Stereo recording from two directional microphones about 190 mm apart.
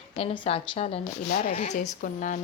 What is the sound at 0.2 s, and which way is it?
Speech, 30° left (ahead or behind).